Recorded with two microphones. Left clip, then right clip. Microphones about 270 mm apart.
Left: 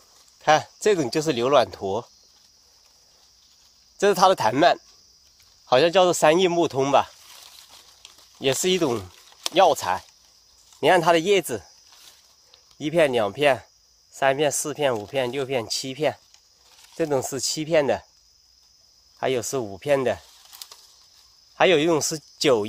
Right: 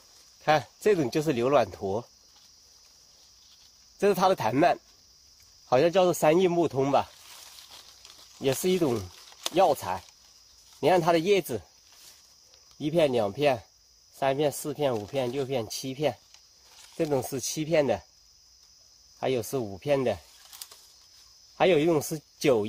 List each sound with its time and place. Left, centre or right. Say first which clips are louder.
0.4 s speech: left 5 dB; left
4.0 s speech: left 6 dB; left
8.5 s speech: left 4 dB; left
12.7 s speech: left 4 dB; left
19.1 s speech: left 4 dB; left
21.5 s speech: left 4 dB; left